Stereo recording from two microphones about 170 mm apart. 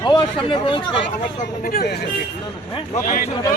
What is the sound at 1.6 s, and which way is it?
Speech, 60° left (ahead or behind).